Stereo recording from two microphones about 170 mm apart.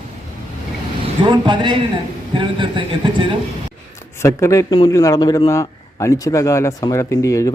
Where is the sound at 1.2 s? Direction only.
30° right (ahead or behind).